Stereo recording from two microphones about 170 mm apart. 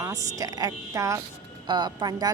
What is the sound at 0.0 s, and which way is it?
A woman's voice, 20° right (ahead or behind).